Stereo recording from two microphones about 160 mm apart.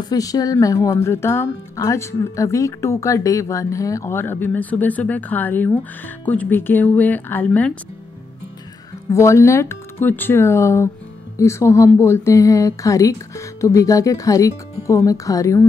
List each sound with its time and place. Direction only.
0.1 s speech: 25° left (ahead or behind)
9.1 s speech: 20° left (ahead or behind)